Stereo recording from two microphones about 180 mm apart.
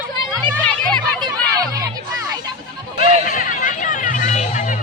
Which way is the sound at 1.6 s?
20° right (ahead or behind).